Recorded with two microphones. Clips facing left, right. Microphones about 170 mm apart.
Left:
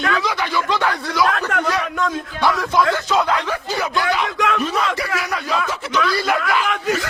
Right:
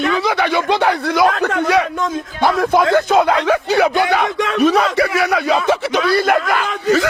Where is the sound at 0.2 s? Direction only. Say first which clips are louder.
Right 5 dB; 60° right (ahead or behind).